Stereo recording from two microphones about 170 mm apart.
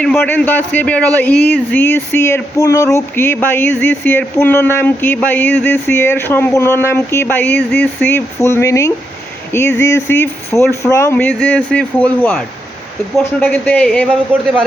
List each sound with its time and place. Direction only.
0.0 s speech: 5° left (ahead or behind)